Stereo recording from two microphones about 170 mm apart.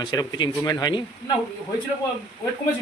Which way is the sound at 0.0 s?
25° left (ahead or behind).